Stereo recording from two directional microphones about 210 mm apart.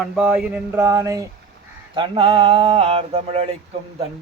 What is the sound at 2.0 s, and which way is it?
Mantra, 25° right (ahead or behind).